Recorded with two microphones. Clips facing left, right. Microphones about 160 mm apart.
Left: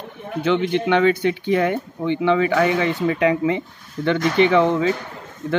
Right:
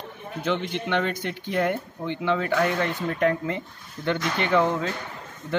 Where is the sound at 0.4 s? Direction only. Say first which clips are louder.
Left 8 dB; 85° left.